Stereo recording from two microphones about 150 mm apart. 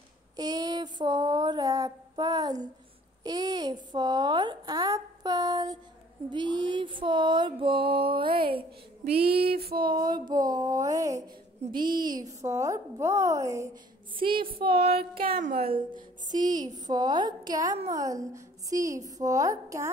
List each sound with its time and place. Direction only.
0.4 s a woman's voice: 25° right (ahead or behind)
6.3 s music: 30° right (ahead or behind)
9.0 s a sound: 90° right
9.8 s a woman's voice: 30° right (ahead or behind)
11.7 s music: 30° right (ahead or behind)
12.2 s a woman's voice: 20° right (ahead or behind)
14.1 s music: 35° right (ahead or behind)
15.2 s a woman's voice: 75° right (ahead or behind)
15.5 s music: 40° right (ahead or behind)
16.3 s speech: 60° right (ahead or behind)
16.6 s a woman's voice: 25° right (ahead or behind)